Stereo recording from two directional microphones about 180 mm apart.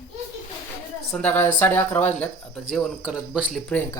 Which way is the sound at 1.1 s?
10° left (ahead or behind).